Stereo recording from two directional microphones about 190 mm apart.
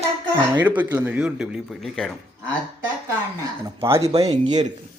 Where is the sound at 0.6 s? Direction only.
10° right (ahead or behind).